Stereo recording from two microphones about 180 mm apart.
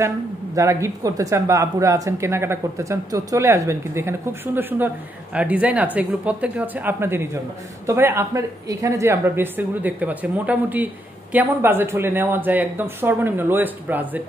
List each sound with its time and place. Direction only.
0.6 s speech: 15° right (ahead or behind)